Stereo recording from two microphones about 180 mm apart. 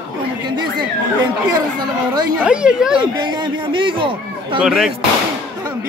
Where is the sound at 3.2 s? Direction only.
25° right (ahead or behind).